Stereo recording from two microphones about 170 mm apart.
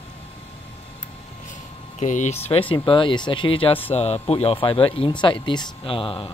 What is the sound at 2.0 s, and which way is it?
Speech, 45° left (ahead or behind).